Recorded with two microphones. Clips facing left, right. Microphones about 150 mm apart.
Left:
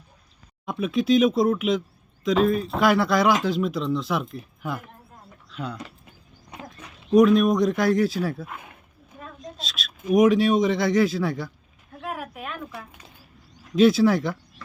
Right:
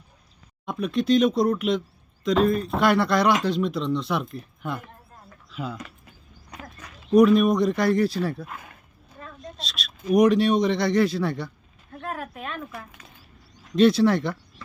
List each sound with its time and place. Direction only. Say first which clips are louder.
0.6 s speech: left 1 dB; centre (ahead or behind)
7.1 s speech: even; centre (ahead or behind)
9.1 s a sound: left 1 dB; 5° left (ahead or behind)
10.1 s a man's voice: even; centre (ahead or behind)